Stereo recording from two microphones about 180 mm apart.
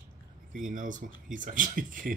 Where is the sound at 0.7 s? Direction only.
45° right (ahead or behind).